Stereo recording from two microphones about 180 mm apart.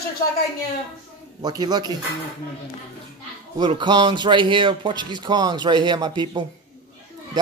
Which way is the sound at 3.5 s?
25° right (ahead or behind).